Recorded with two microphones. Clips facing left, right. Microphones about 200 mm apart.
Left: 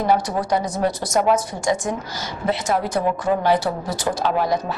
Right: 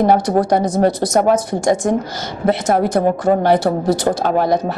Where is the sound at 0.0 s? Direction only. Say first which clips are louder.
Right 6 dB; 50° right (ahead or behind).